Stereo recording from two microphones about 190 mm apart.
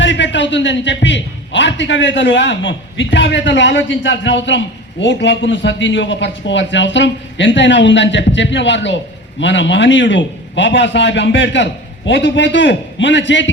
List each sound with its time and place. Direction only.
0.0 s a man's voice: 70° left (ahead or behind)